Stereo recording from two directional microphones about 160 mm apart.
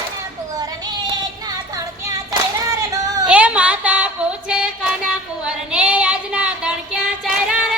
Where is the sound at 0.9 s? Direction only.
25° right (ahead or behind).